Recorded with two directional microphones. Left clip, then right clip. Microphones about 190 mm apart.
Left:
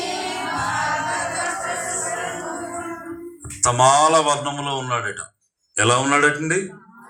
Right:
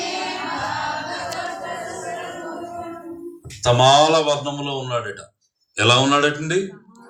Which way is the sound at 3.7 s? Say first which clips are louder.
Even; 10° right (ahead or behind).